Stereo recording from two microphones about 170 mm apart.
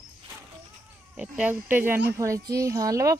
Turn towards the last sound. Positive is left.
turn(degrees=-20)  # may be behind; listen again after turning